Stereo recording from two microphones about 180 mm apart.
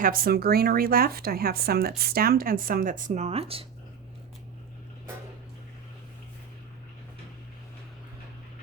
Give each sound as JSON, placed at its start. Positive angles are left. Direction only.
{"t": 0.0, "sound": "speech", "side_deg": -55}